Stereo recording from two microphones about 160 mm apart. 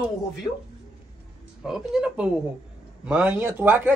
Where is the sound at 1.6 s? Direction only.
5° right (ahead or behind).